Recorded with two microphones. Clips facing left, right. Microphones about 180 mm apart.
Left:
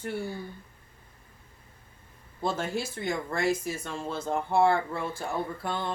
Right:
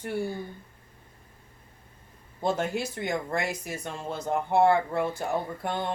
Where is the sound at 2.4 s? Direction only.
20° right (ahead or behind).